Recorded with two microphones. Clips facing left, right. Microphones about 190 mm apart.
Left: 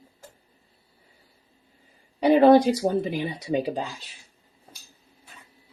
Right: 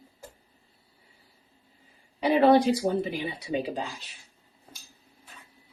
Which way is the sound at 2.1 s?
45° left (ahead or behind).